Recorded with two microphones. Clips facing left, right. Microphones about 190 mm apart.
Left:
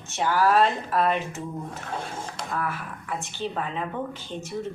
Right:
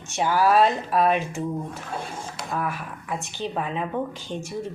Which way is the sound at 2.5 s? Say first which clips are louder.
Right 2 dB; 15° right (ahead or behind).